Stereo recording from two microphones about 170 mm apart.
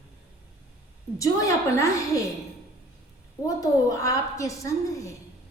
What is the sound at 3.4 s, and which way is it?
A woman's voice, 20° left (ahead or behind).